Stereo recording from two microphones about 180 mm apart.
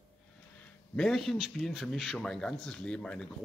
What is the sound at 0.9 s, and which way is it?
A man's voice, 5° left (ahead or behind).